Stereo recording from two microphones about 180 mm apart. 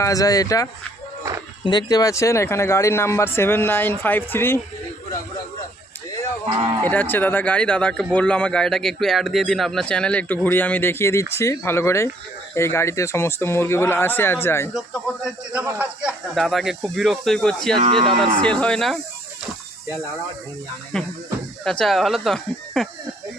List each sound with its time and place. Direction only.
0.0 s speech: 20° left (ahead or behind)
6.8 s speech: 10° left (ahead or behind)
15.5 s speech: 10° right (ahead or behind)
17.8 s speech: 35° right (ahead or behind)
18.2 s speech: 5° left (ahead or behind)
20.9 s speech: 5° left (ahead or behind)